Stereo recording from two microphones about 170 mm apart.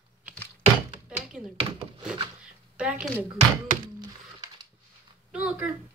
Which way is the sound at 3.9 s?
25° right (ahead or behind).